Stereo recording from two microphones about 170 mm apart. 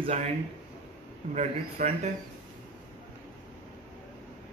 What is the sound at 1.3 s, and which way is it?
Speech, 40° right (ahead or behind).